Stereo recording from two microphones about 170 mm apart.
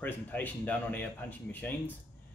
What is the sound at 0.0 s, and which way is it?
Speech, 10° left (ahead or behind).